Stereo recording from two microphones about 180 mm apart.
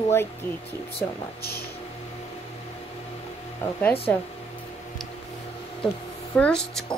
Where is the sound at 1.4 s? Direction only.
60° left (ahead or behind).